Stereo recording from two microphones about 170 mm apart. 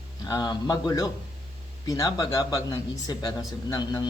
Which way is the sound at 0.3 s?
25° left (ahead or behind).